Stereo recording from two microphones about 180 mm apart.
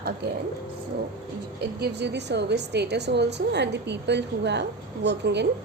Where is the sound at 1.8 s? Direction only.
70° right (ahead or behind).